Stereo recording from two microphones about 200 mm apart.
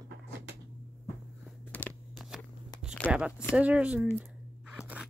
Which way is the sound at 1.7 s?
5° left (ahead or behind).